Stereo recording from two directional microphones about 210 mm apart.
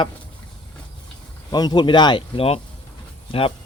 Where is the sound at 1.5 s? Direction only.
20° left (ahead or behind).